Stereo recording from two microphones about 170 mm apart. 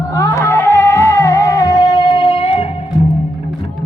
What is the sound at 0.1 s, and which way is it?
Music, 20° left (ahead or behind).